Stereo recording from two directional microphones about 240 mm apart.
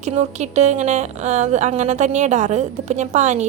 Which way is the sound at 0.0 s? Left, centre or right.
Right.